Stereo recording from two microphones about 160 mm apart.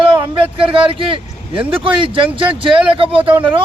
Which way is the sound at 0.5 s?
35° right (ahead or behind).